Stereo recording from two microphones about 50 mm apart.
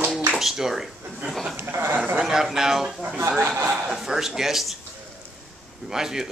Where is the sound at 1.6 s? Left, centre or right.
Right.